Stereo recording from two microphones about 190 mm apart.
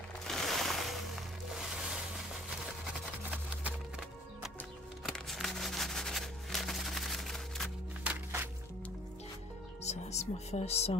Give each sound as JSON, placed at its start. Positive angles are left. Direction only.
{"t": 0.3, "sound": "music", "side_deg": 0}
{"t": 5.0, "sound": "music", "side_deg": 0}
{"t": 9.8, "sound": "speech", "side_deg": 35}